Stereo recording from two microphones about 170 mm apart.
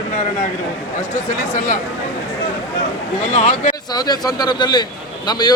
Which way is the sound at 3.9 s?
25° left (ahead or behind).